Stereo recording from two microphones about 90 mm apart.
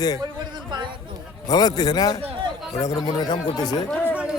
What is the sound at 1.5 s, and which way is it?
Speech, 50° left (ahead or behind).